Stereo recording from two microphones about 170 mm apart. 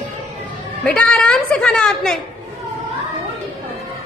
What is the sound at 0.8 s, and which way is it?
Chatter, 5° left (ahead or behind).